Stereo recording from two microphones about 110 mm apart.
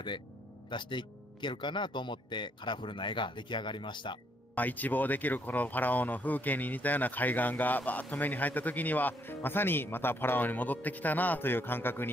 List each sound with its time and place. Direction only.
0.7 s speech: 45° left (ahead or behind)
4.6 s speech: 15° left (ahead or behind)